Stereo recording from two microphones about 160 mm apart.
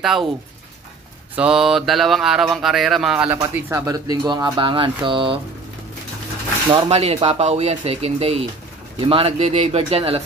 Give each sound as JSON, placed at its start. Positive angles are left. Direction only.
{"t": 0.0, "sound": "mantra", "side_deg": 0}
{"t": 1.3, "sound": "mantra", "side_deg": -5}
{"t": 3.3, "sound": "speech", "side_deg": -20}
{"t": 6.7, "sound": "speech", "side_deg": -40}